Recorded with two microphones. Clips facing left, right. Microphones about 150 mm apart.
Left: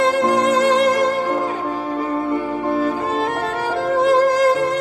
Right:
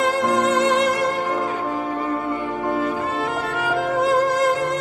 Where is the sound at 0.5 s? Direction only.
35° left (ahead or behind).